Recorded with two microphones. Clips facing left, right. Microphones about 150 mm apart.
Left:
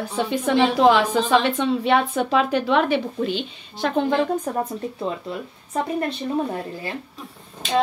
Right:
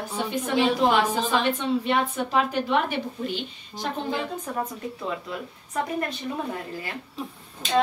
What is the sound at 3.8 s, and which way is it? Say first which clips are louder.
Speech: left 8 dB; 70° left (ahead or behind).